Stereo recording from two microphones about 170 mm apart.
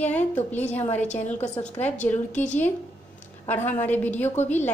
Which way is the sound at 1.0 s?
40° left (ahead or behind).